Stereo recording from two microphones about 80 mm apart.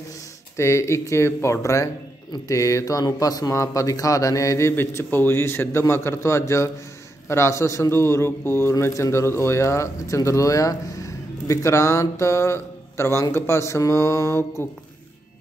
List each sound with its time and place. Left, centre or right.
0.6 s a man's voice: left